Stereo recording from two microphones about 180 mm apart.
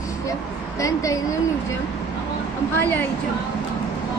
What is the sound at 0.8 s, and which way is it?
Speech, 20° left (ahead or behind).